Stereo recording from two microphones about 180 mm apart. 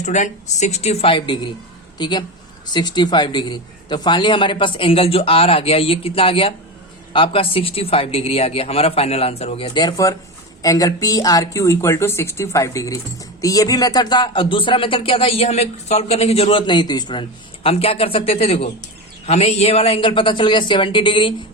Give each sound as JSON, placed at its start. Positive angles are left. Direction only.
{"t": 0.0, "sound": "speech", "side_deg": 40}